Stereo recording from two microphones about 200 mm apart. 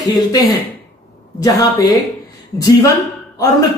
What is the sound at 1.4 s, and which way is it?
A woman's voice, 15° left (ahead or behind).